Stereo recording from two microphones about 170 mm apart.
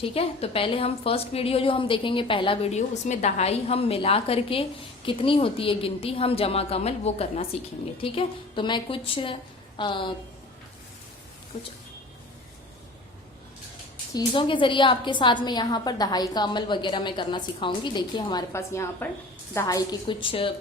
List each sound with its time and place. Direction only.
0.0 s a woman's voice: 35° left (ahead or behind)
14.1 s a woman's voice: 25° left (ahead or behind)